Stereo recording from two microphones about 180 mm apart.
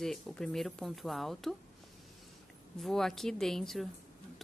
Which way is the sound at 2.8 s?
Centre (ahead or behind).